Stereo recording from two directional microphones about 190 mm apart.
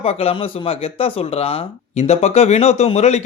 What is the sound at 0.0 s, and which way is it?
A man's voice, 30° left (ahead or behind).